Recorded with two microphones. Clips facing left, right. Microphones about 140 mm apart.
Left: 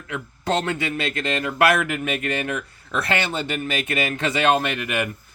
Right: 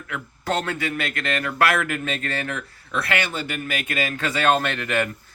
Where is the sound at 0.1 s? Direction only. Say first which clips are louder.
Left 2 dB; 20° left (ahead or behind).